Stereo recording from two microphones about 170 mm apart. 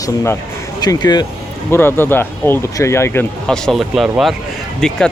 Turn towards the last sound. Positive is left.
turn(degrees=5)  # may be behind; listen again after turning